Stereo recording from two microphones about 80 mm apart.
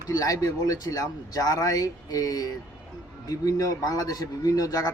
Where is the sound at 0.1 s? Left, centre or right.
Left.